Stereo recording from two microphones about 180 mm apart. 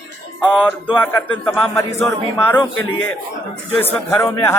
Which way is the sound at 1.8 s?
15° left (ahead or behind).